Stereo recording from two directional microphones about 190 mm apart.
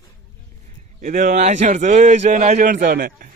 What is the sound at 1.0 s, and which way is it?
Speech, 45° right (ahead or behind).